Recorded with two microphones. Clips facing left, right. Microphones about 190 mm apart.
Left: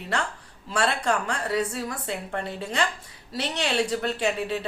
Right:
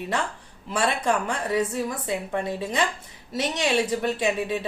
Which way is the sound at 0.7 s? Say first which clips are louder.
Right 1 dB; 15° right (ahead or behind).